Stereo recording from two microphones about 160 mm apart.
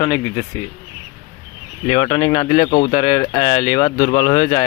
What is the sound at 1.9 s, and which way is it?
Speech, 40° left (ahead or behind).